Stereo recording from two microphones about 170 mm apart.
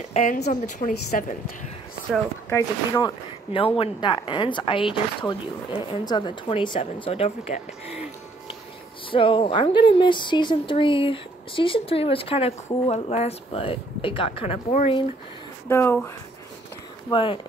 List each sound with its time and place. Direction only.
0.1 s a woman's voice: 45° left (ahead or behind)
2.5 s speech: 15° left (ahead or behind)
3.5 s a woman's voice: 30° left (ahead or behind)
9.1 s speech: 30° left (ahead or behind)
15.7 s speech: 15° left (ahead or behind)
17.1 s speech: 30° left (ahead or behind)